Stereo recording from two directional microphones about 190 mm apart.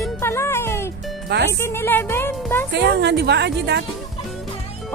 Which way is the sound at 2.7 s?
60° right (ahead or behind).